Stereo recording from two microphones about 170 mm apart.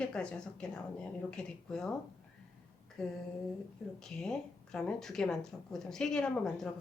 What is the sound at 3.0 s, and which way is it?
Speech, 5° left (ahead or behind).